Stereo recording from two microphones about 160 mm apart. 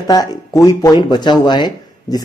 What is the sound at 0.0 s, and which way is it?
Speech, 25° left (ahead or behind).